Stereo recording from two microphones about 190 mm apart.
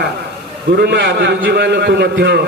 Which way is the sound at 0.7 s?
60° right (ahead or behind).